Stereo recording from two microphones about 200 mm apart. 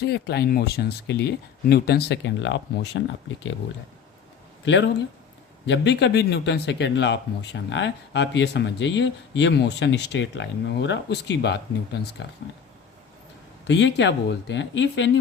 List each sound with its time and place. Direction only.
0.0 s speech: 55° left (ahead or behind)
4.6 s speech: 65° left (ahead or behind)
13.7 s speech: 60° left (ahead or behind)